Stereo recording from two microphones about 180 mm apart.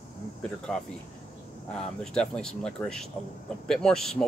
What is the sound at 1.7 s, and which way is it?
Speech, 5° left (ahead or behind).